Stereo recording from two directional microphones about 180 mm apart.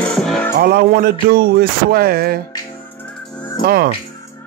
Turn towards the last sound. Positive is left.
turn(degrees=-55)  # may be behind; listen again after turning